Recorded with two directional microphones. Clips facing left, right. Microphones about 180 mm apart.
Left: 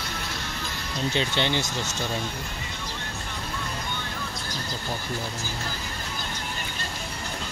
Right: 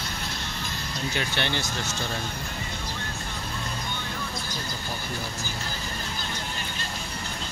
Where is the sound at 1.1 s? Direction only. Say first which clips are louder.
Left 3 dB; 20° left (ahead or behind).